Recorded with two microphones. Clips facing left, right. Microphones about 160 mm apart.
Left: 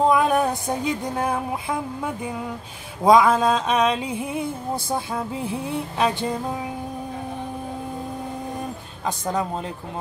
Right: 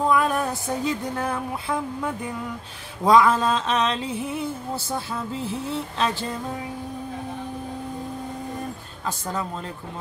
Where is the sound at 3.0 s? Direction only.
10° left (ahead or behind).